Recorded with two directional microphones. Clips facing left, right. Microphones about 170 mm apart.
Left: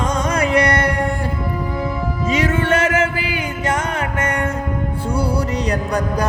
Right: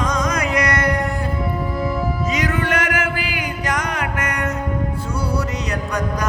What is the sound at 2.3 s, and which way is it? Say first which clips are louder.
Music: left 6 dB; 25° left (ahead or behind).